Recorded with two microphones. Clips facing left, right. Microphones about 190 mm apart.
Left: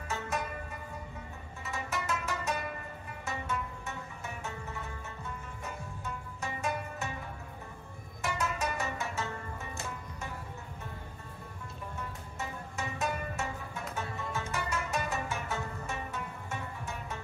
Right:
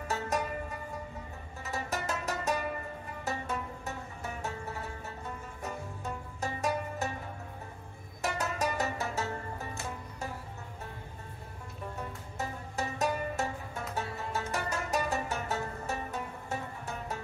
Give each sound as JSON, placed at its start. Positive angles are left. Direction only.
{"t": 1.7, "sound": "music", "side_deg": -40}
{"t": 5.6, "sound": "music", "side_deg": -40}
{"t": 8.2, "sound": "music", "side_deg": -40}
{"t": 12.7, "sound": "music", "side_deg": -40}